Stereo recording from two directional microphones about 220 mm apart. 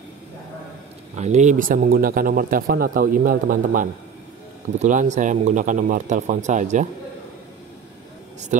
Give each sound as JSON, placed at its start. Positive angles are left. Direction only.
{"t": 1.1, "sound": "speech", "side_deg": -30}